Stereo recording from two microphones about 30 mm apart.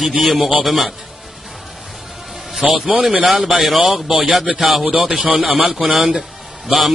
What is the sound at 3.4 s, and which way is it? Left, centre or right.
A man's voice, centre.